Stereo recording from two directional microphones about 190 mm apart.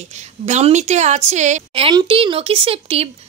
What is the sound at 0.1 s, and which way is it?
A woman's voice, 35° right (ahead or behind).